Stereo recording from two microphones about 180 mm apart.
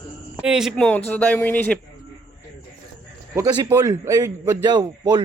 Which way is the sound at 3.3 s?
20° right (ahead or behind).